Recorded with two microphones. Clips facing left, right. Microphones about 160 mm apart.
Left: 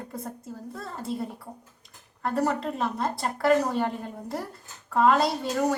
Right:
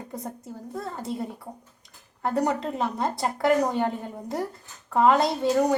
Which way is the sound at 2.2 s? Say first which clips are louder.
Right 1 dB; 20° right (ahead or behind).